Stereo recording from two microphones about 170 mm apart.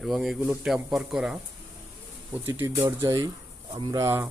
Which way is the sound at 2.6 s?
20° right (ahead or behind).